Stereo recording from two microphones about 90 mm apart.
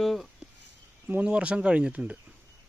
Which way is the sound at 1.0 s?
15° right (ahead or behind).